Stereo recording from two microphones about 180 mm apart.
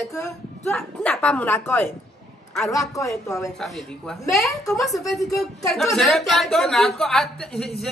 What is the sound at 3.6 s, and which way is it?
A woman's voice, centre (ahead or behind).